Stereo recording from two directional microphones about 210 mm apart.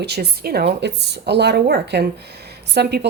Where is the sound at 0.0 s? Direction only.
50° right (ahead or behind).